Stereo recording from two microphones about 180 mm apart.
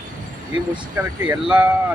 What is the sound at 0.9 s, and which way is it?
Speech, 10° right (ahead or behind).